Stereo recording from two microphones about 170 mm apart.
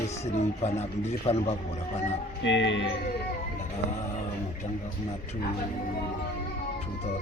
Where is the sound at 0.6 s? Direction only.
40° left (ahead or behind).